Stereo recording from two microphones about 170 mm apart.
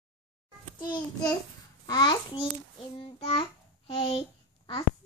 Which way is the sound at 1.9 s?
25° left (ahead or behind).